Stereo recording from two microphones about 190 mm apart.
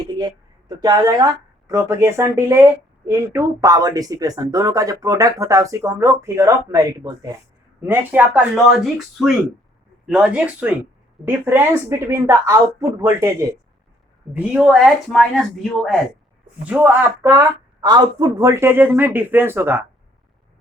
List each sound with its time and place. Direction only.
0.0 s speech: 25° right (ahead or behind)
14.3 s speech: 5° right (ahead or behind)